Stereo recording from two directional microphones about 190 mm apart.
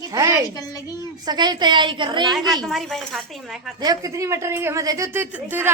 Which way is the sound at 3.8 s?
20° right (ahead or behind).